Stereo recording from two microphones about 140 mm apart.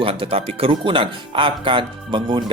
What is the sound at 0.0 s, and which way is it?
Speech, 40° right (ahead or behind).